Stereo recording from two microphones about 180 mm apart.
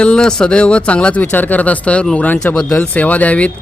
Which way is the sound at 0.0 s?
5° left (ahead or behind).